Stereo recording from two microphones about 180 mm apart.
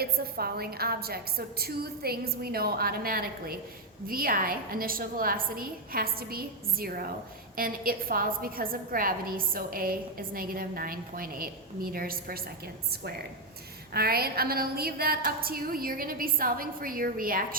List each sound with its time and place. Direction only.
0.0 s a woman's voice: 60° right (ahead or behind)
13.9 s a woman's voice: 60° right (ahead or behind)